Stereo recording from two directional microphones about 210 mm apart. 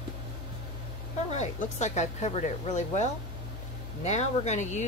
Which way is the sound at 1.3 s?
35° left (ahead or behind).